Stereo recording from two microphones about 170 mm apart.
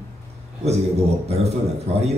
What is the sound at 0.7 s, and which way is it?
Speech, 40° right (ahead or behind).